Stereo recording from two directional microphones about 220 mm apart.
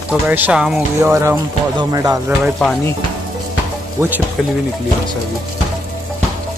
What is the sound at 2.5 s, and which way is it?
Speech, 5° left (ahead or behind).